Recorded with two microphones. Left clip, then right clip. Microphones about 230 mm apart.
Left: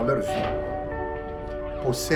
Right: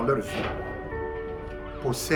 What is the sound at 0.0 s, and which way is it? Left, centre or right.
Speech, centre.